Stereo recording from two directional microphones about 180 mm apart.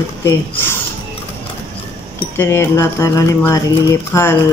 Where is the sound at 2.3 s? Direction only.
15° left (ahead or behind).